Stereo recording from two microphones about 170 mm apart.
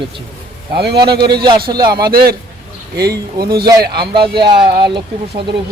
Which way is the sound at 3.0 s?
65° right (ahead or behind).